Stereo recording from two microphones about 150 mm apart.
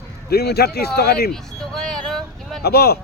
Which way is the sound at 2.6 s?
90° left.